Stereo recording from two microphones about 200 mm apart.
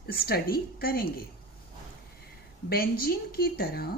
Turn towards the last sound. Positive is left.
turn(degrees=50)  # may be behind; listen again after turning